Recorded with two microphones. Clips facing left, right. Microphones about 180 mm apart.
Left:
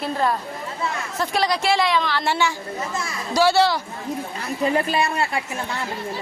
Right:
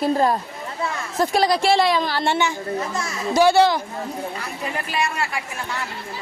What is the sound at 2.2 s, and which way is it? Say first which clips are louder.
A woman's voice: right 1 dB; 20° right (ahead or behind).